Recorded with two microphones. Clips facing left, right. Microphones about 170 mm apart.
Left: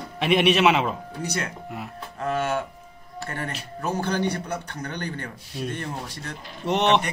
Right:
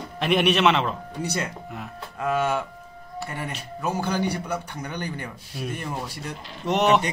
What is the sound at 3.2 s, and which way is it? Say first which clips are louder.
A man's voice: left 1 dB; 10° right (ahead or behind).